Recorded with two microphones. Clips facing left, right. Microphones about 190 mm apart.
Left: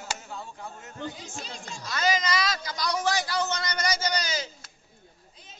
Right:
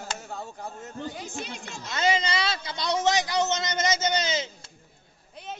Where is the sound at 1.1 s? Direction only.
60° right (ahead or behind).